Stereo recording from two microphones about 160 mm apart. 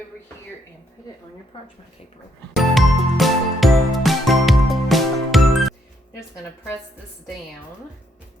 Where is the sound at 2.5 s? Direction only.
Centre (ahead or behind).